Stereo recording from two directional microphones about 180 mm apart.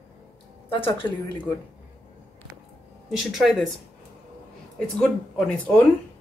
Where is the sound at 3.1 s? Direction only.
Centre (ahead or behind).